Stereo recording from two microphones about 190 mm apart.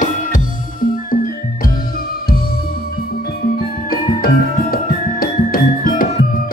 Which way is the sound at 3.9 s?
50° left (ahead or behind).